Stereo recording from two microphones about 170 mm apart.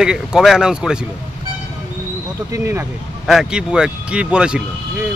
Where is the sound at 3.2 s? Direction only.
5° right (ahead or behind).